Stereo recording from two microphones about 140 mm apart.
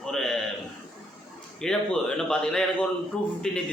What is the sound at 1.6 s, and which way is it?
A man's voice, 5° left (ahead or behind).